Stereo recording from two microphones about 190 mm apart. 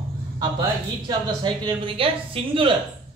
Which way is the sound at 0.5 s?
20° right (ahead or behind).